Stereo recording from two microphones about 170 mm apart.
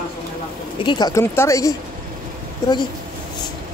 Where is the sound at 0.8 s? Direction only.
25° left (ahead or behind).